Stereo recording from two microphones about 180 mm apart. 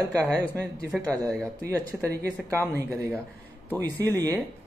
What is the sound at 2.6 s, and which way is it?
Speech, 10° left (ahead or behind).